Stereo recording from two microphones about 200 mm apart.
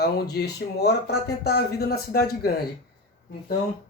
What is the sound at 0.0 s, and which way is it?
Speech, 55° left (ahead or behind).